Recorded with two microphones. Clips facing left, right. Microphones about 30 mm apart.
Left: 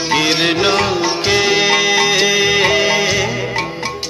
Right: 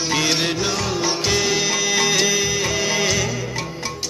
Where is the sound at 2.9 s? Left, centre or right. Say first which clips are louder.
Left 5 dB; left.